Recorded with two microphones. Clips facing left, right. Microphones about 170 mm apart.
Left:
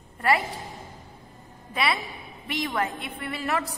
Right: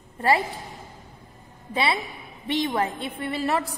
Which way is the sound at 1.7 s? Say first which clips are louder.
Right 2 dB; 30° right (ahead or behind).